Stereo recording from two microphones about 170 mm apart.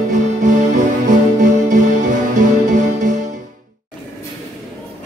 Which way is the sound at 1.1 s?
50° right (ahead or behind).